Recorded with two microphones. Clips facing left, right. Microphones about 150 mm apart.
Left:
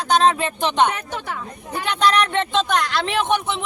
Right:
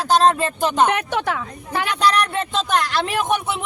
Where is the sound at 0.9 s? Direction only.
75° right (ahead or behind).